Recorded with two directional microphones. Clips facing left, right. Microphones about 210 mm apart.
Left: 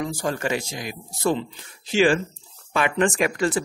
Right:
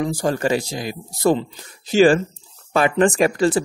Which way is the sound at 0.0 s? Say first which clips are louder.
Right 5 dB; 40° right (ahead or behind).